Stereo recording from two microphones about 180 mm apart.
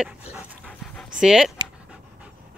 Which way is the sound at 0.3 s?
10° right (ahead or behind).